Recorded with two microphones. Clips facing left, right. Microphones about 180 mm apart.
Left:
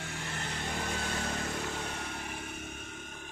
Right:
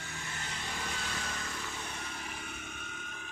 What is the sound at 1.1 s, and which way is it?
Vehicle, 35° left (ahead or behind).